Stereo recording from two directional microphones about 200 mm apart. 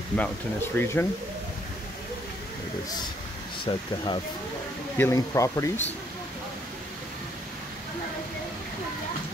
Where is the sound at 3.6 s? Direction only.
25° left (ahead or behind).